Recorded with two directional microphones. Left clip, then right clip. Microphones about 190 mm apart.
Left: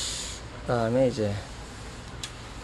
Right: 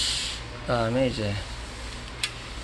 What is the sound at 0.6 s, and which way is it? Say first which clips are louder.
Speech: left 1 dB; 50° left (ahead or behind).